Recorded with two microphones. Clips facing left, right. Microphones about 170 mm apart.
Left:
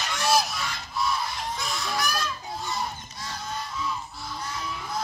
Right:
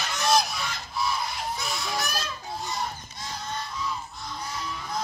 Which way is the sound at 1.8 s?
25° right (ahead or behind).